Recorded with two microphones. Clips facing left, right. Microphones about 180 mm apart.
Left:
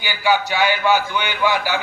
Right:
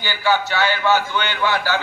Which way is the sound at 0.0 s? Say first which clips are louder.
Left 1 dB; 15° left (ahead or behind).